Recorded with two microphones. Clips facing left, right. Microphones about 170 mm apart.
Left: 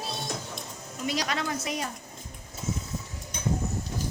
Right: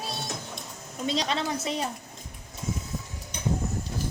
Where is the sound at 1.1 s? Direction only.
25° right (ahead or behind).